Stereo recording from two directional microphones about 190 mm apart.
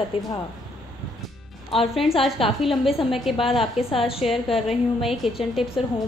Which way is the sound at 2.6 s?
Centre (ahead or behind).